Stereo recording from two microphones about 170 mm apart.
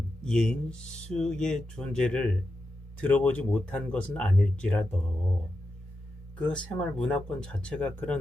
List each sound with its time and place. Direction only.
0.3 s speech: 5° left (ahead or behind)
0.9 s music: 45° left (ahead or behind)
1.1 s speech: 5° left (ahead or behind)
6.4 s speech: 5° left (ahead or behind)